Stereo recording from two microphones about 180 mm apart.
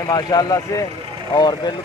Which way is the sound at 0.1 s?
20° left (ahead or behind).